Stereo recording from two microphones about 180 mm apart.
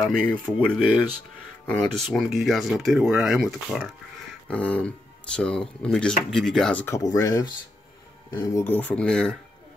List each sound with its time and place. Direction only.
0.0 s speech: 5° left (ahead or behind)
7.0 s speech: 20° left (ahead or behind); by 9.4 s 5° left (ahead or behind)